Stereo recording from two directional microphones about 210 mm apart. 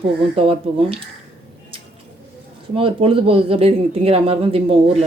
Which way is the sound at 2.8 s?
25° right (ahead or behind).